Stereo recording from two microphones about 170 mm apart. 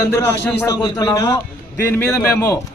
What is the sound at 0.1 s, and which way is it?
A man's voice, 20° left (ahead or behind).